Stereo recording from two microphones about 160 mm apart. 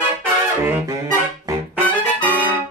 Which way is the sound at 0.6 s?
15° right (ahead or behind).